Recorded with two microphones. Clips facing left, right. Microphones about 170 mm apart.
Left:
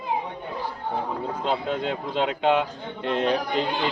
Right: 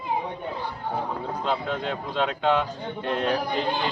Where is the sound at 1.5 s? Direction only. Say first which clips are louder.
Left 2 dB; 20° left (ahead or behind).